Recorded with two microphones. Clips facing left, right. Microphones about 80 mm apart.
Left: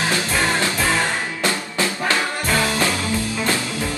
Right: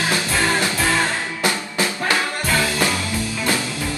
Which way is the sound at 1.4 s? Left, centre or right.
Centre.